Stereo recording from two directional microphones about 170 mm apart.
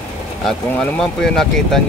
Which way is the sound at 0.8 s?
5° left (ahead or behind).